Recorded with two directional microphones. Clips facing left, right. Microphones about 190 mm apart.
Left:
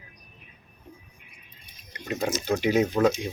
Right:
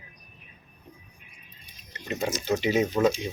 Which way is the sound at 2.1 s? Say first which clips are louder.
Left 1 dB; centre (ahead or behind).